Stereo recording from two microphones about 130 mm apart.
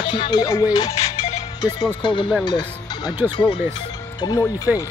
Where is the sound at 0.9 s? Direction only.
55° left (ahead or behind).